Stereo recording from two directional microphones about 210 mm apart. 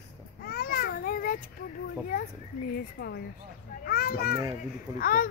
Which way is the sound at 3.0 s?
50° left (ahead or behind).